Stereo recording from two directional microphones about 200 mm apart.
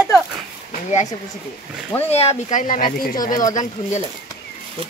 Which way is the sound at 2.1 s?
30° left (ahead or behind).